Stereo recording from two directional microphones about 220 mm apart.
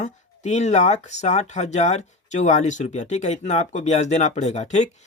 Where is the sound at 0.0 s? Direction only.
30° left (ahead or behind).